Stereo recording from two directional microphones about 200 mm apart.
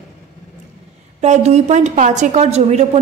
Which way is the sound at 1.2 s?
35° right (ahead or behind).